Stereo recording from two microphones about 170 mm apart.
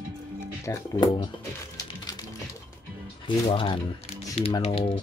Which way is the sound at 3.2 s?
30° left (ahead or behind).